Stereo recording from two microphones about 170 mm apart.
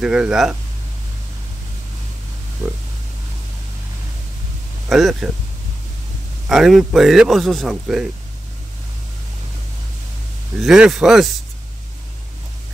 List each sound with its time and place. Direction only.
0.0 s speech: 5° right (ahead or behind)
4.8 s speech: centre (ahead or behind)
6.5 s speech: centre (ahead or behind)
10.6 s speech: centre (ahead or behind)